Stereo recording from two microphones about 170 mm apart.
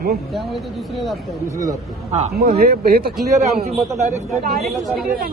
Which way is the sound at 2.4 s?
65° right (ahead or behind).